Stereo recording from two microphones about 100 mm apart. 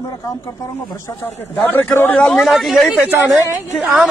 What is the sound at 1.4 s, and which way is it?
Speech, 20° left (ahead or behind).